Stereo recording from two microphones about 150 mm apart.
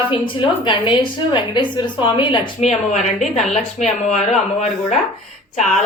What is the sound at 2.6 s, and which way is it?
Speech, 50° left (ahead or behind).